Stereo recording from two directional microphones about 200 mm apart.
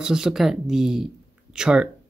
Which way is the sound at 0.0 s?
5° right (ahead or behind).